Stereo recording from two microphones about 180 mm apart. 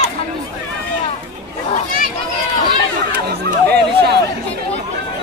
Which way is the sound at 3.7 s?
65° right (ahead or behind).